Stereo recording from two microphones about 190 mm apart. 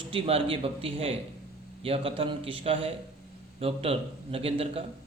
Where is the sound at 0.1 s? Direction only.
30° right (ahead or behind).